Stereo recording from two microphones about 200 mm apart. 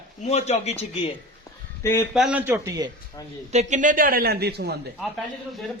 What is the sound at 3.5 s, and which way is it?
A man's voice, 40° right (ahead or behind).